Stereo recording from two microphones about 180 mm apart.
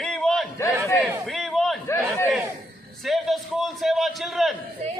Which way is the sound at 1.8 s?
15° left (ahead or behind).